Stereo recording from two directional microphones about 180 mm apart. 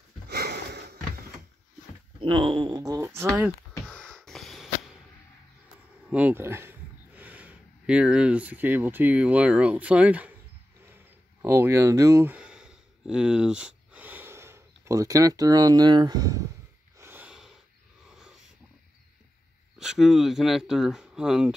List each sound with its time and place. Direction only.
0.3 s sniff: 65° right (ahead or behind)
2.1 s speech: 30° right (ahead or behind); by 3.5 s 10° right (ahead or behind)
3.8 s a sound: 5° left (ahead or behind)
6.0 s speech: 5° right (ahead or behind)
11.4 s speech: 15° right (ahead or behind)
17.0 s snort: 10° right (ahead or behind)
19.8 s speech: centre (ahead or behind)